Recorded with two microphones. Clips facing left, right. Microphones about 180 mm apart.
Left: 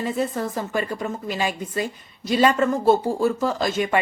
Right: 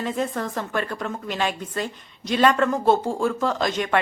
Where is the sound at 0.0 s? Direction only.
5° left (ahead or behind).